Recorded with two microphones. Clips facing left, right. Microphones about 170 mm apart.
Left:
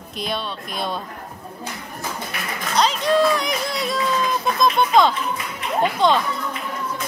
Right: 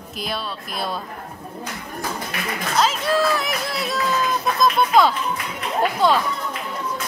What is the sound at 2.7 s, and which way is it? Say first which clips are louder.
Speech: left 2 dB; 5° right (ahead or behind).